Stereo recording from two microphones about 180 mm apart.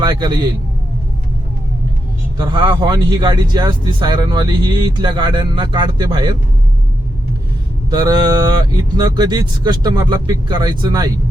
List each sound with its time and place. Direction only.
0.0 s a man's voice: 25° right (ahead or behind)
2.4 s a man's voice: 25° right (ahead or behind)
7.9 s a man's voice: 20° right (ahead or behind)